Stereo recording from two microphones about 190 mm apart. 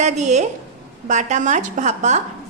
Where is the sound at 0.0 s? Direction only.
35° right (ahead or behind).